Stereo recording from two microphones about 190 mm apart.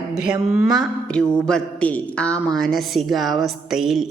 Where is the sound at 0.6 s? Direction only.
Centre (ahead or behind).